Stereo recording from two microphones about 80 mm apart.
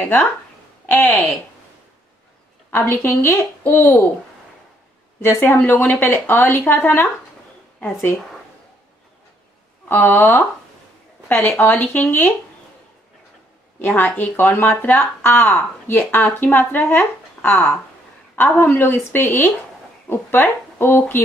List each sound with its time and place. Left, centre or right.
0.8 s speech: left
2.7 s speech: left
5.2 s speech: left
9.8 s speech: left
11.2 s speech: left
13.7 s speech: left